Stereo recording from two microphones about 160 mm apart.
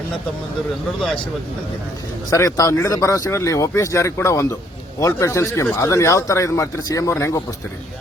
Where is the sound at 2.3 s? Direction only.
20° left (ahead or behind).